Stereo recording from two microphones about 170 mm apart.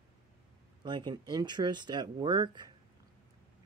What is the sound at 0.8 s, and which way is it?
Speech, 25° right (ahead or behind).